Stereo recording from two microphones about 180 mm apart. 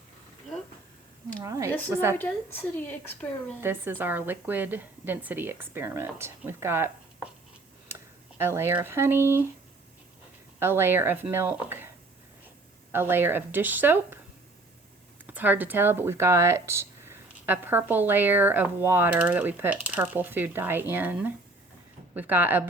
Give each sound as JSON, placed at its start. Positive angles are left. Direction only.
{"t": 1.4, "sound": "speech", "side_deg": -15}
{"t": 2.1, "sound": "a woman's voice", "side_deg": 10}
{"t": 3.6, "sound": "speech", "side_deg": -10}
{"t": 10.6, "sound": "speech", "side_deg": -15}
{"t": 12.9, "sound": "speech", "side_deg": -10}
{"t": 15.3, "sound": "speech", "side_deg": -10}